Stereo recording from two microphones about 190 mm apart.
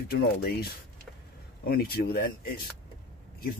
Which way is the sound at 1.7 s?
55° left (ahead or behind).